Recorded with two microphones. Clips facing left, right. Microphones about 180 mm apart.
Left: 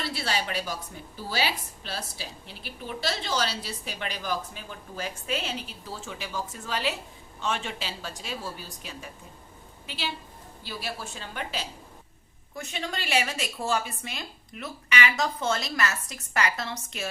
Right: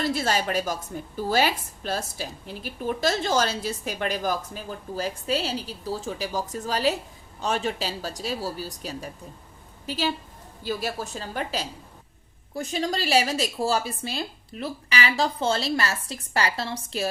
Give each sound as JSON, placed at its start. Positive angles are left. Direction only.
{"t": 0.0, "sound": "a woman's voice", "side_deg": -45}